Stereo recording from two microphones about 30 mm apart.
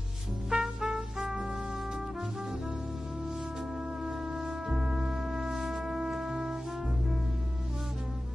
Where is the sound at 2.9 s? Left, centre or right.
Centre.